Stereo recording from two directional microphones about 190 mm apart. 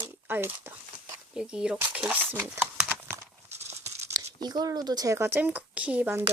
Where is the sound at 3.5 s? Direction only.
35° right (ahead or behind).